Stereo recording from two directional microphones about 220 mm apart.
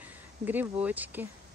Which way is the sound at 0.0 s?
10° right (ahead or behind).